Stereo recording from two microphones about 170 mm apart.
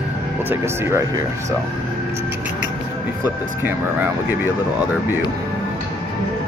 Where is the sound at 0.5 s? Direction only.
15° right (ahead or behind).